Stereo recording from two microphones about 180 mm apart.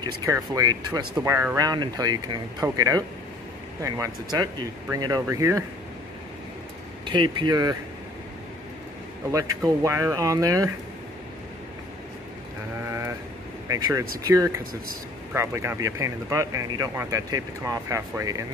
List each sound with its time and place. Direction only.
0.2 s speech: 20° right (ahead or behind)
7.1 s speech: 25° right (ahead or behind)
9.3 s speech: 20° right (ahead or behind)
13.7 s speech: 20° right (ahead or behind)